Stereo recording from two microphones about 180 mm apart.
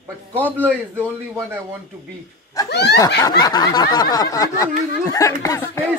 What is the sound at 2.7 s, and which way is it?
Speech, 65° left (ahead or behind).